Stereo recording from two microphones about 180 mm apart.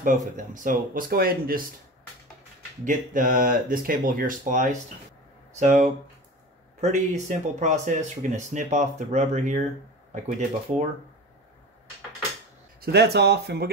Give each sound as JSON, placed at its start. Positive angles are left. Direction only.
{"t": 0.0, "sound": "speech", "side_deg": -45}
{"t": 2.8, "sound": "speech", "side_deg": -45}
{"t": 12.8, "sound": "speech", "side_deg": -65}